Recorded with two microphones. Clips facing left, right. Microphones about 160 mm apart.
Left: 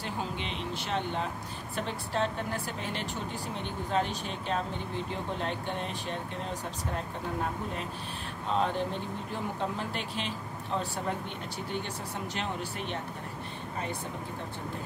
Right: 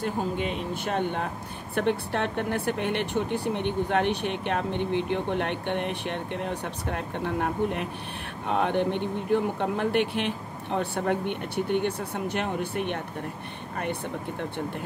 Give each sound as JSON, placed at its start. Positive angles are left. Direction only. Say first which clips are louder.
{"t": 0.0, "sound": "speech", "louder": "right 7 dB", "side_deg": -50}